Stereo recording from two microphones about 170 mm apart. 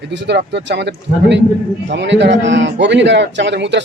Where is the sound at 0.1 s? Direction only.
90° right.